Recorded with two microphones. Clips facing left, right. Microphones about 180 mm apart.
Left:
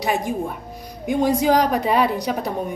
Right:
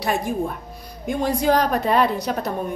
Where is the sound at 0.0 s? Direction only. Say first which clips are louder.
Even; 15° left (ahead or behind).